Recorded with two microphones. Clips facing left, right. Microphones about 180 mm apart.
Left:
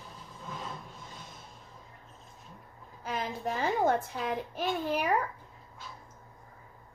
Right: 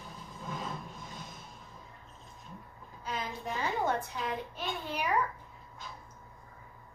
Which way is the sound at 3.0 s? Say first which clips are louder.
Left 4 dB; 50° left (ahead or behind).